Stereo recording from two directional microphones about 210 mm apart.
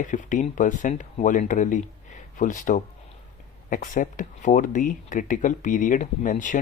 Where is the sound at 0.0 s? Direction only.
35° left (ahead or behind).